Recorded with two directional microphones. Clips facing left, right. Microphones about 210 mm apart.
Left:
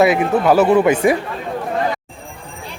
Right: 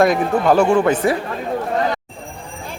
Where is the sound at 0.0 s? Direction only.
5° left (ahead or behind).